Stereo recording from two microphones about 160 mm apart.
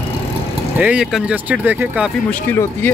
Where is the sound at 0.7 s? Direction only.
5° right (ahead or behind).